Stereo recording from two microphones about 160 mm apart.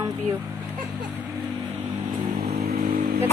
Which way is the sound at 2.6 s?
70° right (ahead or behind).